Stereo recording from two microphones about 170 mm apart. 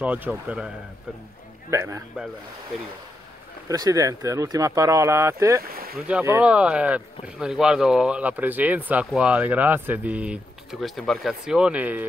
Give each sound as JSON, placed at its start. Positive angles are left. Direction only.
{"t": 0.0, "sound": "speech", "side_deg": -10}
{"t": 1.7, "sound": "speech", "side_deg": -20}
{"t": 3.6, "sound": "speech", "side_deg": -20}